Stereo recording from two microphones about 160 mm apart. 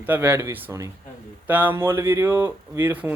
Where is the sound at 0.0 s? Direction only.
10° right (ahead or behind).